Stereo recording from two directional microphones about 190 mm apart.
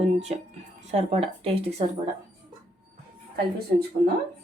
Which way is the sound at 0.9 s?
35° right (ahead or behind).